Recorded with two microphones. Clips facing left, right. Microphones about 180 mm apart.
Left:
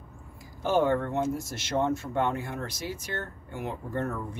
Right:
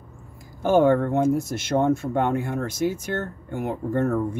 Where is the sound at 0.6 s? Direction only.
50° right (ahead or behind).